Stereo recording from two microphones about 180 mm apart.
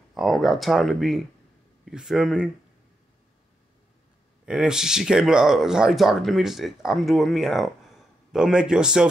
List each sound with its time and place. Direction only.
0.1 s speech: centre (ahead or behind)
4.5 s speech: 5° right (ahead or behind)